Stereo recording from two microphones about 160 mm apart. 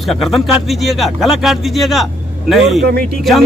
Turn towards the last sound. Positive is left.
turn(degrees=0)  # may be behind; listen again after turning